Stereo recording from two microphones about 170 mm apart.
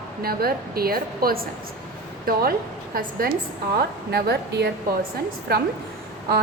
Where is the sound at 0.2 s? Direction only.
60° right (ahead or behind).